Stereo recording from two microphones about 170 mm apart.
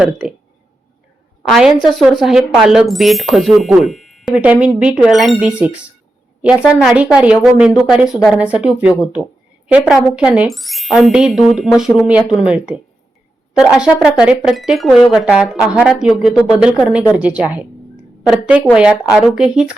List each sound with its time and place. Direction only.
0.0 s speech: 5° right (ahead or behind)
1.5 s speech: centre (ahead or behind)